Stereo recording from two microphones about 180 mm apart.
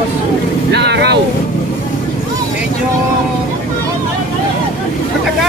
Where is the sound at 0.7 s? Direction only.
70° right (ahead or behind).